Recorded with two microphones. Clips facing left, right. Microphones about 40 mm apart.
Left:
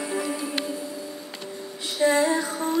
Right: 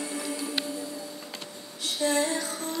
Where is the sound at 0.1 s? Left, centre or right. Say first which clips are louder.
Left 6 dB; left.